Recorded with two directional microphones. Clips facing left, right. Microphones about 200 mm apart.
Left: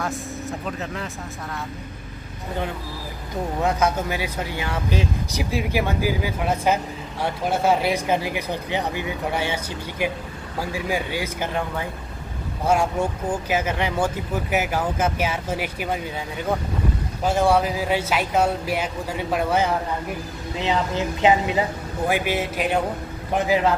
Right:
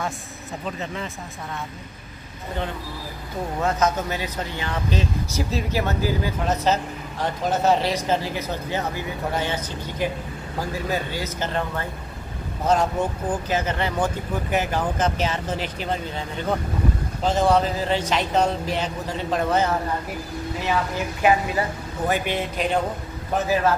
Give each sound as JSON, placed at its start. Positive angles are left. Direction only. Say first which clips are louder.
{"t": 0.7, "sound": "speech", "louder": "even", "side_deg": 0}
{"t": 3.6, "sound": "speech", "louder": "even", "side_deg": 10}
{"t": 20.5, "sound": "speech", "louder": "left 2 dB", "side_deg": 20}